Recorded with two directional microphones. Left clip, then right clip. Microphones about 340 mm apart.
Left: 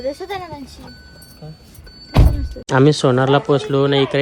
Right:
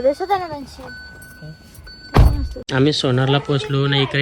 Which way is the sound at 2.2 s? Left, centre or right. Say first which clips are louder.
Even; centre.